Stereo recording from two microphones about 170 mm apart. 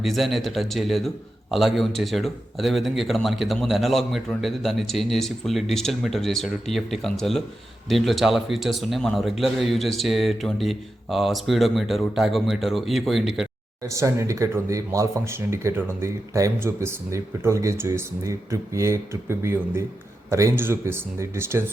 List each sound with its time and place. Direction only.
0.0 s a man's voice: centre (ahead or behind)
13.8 s speech: 15° right (ahead or behind)